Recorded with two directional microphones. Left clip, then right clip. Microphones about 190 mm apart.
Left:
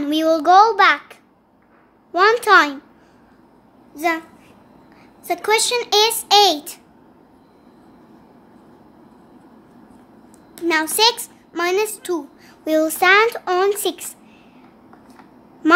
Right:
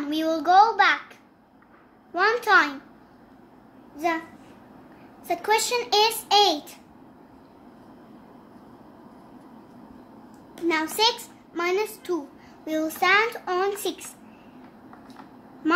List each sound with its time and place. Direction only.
0.0 s a child's voice: 50° left (ahead or behind)
2.1 s a child's voice: 50° left (ahead or behind)
3.9 s a child's voice: 50° left (ahead or behind)
5.2 s a child's voice: 50° left (ahead or behind)
10.7 s a child's voice: 45° left (ahead or behind)